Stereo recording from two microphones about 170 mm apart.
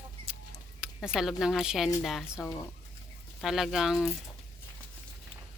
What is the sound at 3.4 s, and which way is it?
Speech, centre (ahead or behind).